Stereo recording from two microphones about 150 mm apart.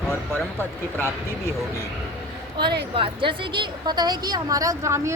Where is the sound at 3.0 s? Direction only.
35° right (ahead or behind).